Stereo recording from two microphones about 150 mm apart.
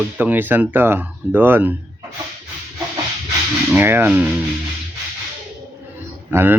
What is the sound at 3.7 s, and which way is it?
Speech, 15° right (ahead or behind).